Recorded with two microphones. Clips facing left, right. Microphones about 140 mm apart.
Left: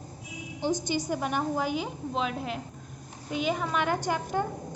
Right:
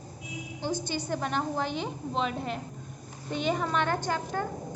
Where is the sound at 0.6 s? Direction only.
15° left (ahead or behind).